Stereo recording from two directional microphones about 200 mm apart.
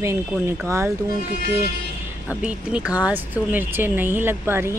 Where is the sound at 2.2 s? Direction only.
5° right (ahead or behind).